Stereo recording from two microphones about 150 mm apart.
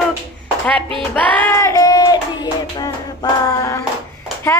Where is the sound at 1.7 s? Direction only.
25° left (ahead or behind).